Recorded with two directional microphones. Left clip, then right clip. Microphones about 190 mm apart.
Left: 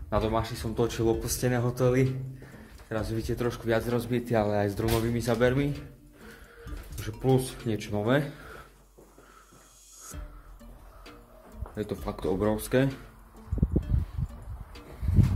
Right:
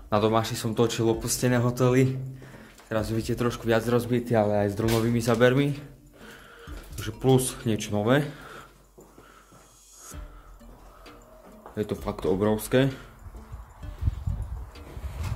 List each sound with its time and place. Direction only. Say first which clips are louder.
0.1 s a man's voice: right 5 dB; 20° right (ahead or behind)
0.8 s speech: even; 10° right (ahead or behind)
11.7 s speech: right 4 dB; 5° right (ahead or behind)